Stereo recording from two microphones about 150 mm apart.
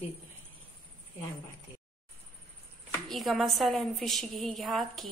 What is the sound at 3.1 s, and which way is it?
A woman's voice, centre (ahead or behind).